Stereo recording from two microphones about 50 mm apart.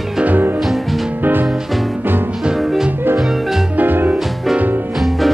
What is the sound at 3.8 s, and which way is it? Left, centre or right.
Music, right.